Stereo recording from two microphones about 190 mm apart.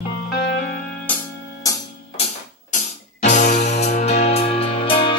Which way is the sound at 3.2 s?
40° left (ahead or behind).